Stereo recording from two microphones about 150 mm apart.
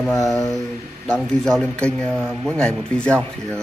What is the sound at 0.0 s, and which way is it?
Speech, centre (ahead or behind).